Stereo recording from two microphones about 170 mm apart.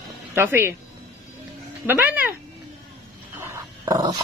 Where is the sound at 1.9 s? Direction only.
10° right (ahead or behind).